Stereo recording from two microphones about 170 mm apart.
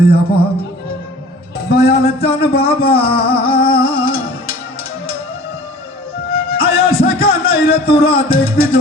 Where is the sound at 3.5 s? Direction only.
60° left (ahead or behind).